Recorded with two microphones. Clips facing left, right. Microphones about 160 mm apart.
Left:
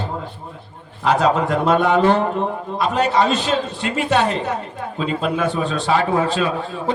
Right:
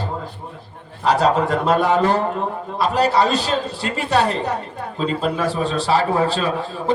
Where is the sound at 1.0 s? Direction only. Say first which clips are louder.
Even; 35° right (ahead or behind).